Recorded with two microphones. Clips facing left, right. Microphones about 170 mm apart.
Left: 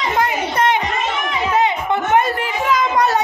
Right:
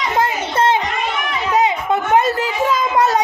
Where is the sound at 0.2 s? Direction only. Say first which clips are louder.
Right 1 dB; 25° right (ahead or behind).